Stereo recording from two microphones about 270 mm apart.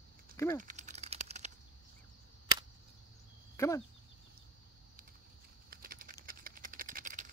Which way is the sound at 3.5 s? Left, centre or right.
Centre.